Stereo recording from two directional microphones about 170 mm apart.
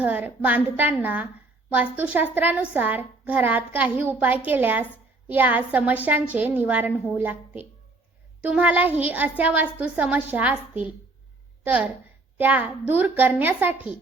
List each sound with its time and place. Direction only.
0.0 s a woman's voice: 10° right (ahead or behind)